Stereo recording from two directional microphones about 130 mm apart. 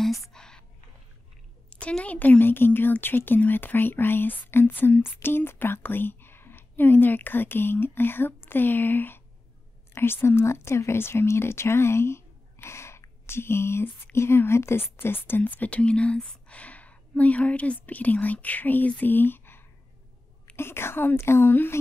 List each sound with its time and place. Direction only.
0.3 s whispering: 5° left (ahead or behind)
1.7 s a woman's voice: 10° left (ahead or behind)